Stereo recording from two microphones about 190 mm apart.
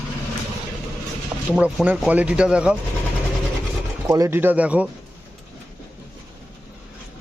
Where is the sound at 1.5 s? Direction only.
5° right (ahead or behind).